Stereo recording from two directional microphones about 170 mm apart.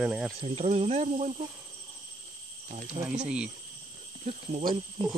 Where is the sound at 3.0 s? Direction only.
35° right (ahead or behind).